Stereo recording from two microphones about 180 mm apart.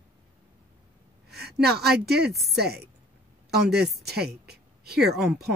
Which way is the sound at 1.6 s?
65° right (ahead or behind).